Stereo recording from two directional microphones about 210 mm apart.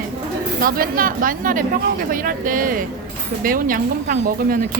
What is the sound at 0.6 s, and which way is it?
Speech, 45° right (ahead or behind).